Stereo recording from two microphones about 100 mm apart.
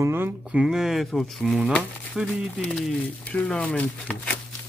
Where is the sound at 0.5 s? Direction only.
5° right (ahead or behind); by 4.3 s 10° left (ahead or behind).